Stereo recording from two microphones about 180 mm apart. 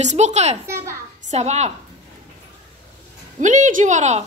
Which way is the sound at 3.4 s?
45° right (ahead or behind).